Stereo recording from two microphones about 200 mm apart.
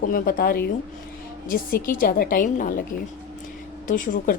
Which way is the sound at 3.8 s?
40° left (ahead or behind).